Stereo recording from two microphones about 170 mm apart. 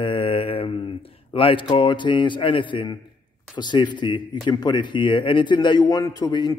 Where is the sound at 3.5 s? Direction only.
25° left (ahead or behind).